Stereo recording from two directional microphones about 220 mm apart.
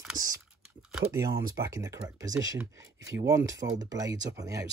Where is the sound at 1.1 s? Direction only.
15° right (ahead or behind).